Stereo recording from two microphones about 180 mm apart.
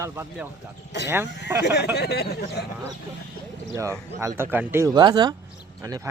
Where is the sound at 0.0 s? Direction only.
15° right (ahead or behind).